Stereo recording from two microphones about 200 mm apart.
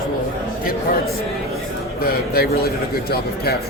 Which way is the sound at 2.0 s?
50° left (ahead or behind).